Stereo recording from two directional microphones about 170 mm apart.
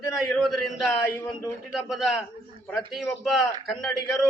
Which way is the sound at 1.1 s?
15° left (ahead or behind).